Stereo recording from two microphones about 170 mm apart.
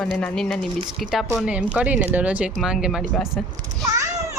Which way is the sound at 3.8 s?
20° right (ahead or behind).